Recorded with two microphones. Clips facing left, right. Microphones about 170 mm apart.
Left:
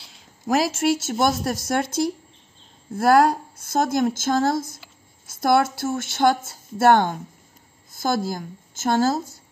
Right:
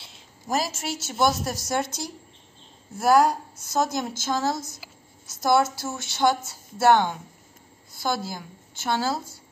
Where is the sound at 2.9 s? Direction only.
60° left (ahead or behind).